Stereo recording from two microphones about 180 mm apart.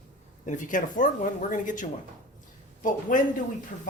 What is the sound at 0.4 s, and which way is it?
Speech, 45° left (ahead or behind).